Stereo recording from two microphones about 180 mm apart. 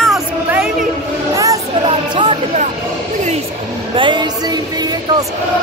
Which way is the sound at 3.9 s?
25° right (ahead or behind).